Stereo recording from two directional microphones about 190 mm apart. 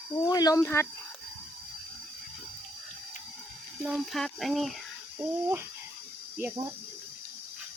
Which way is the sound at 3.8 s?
Centre (ahead or behind).